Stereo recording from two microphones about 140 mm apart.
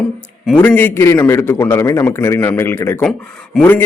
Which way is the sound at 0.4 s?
5° left (ahead or behind).